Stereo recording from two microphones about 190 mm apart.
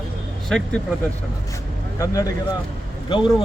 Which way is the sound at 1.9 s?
15° left (ahead or behind).